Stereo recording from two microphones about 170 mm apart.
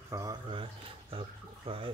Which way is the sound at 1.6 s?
30° right (ahead or behind).